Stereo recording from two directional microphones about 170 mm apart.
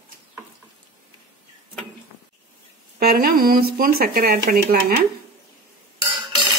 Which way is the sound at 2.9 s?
60° right (ahead or behind).